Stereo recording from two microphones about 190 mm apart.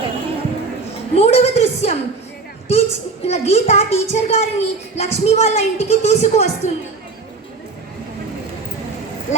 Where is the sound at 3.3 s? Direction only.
35° left (ahead or behind).